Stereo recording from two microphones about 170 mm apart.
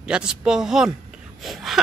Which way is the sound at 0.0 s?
5° right (ahead or behind).